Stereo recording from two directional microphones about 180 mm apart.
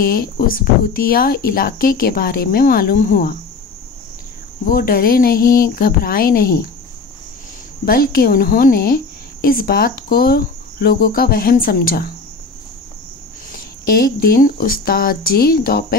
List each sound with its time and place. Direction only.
0.0 s speech: 55° left (ahead or behind)
4.6 s a woman's voice: 55° left (ahead or behind)
7.8 s a woman's voice: 55° left (ahead or behind)
13.5 s a woman's voice: 55° left (ahead or behind)